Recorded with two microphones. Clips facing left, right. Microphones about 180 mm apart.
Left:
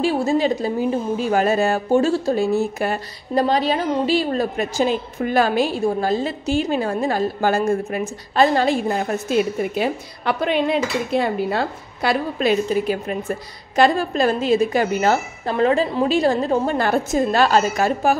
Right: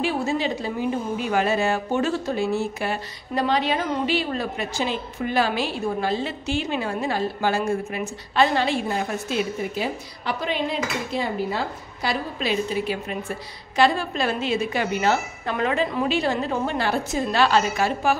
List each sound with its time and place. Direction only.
0.0 s a woman's voice: 35° left (ahead or behind)